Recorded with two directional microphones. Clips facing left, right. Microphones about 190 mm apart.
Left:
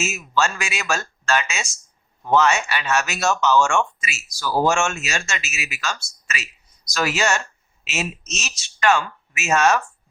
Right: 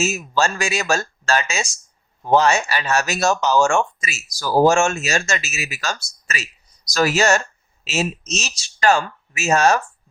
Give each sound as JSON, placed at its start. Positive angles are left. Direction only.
{"t": 0.0, "sound": "speech", "side_deg": -35}